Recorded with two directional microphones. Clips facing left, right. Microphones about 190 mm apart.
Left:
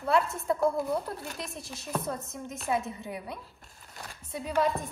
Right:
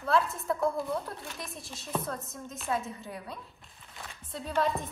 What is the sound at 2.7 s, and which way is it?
Speech, 15° left (ahead or behind).